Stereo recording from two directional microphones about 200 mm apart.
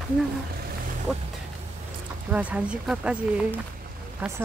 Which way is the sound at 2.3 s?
5° right (ahead or behind).